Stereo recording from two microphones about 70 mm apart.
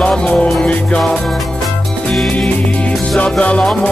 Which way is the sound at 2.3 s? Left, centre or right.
Centre.